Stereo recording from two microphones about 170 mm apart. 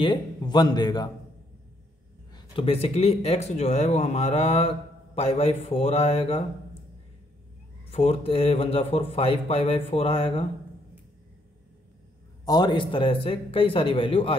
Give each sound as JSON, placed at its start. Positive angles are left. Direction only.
{"t": 0.0, "sound": "a man's voice", "side_deg": 25}
{"t": 2.3, "sound": "speech", "side_deg": 30}
{"t": 7.9, "sound": "speech", "side_deg": 35}
{"t": 12.4, "sound": "speech", "side_deg": 25}